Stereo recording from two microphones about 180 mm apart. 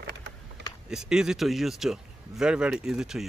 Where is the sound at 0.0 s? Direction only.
70° right (ahead or behind).